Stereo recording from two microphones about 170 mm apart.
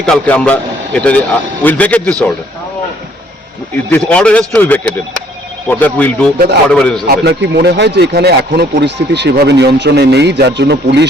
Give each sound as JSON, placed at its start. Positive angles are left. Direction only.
{"t": 0.0, "sound": "speech", "side_deg": 5}
{"t": 3.9, "sound": "a man's voice", "side_deg": 5}
{"t": 7.1, "sound": "speech", "side_deg": -75}